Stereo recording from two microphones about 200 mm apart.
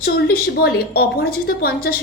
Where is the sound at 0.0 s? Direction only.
50° left (ahead or behind).